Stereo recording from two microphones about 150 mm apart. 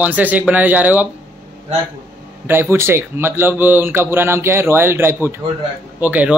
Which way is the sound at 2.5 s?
15° right (ahead or behind).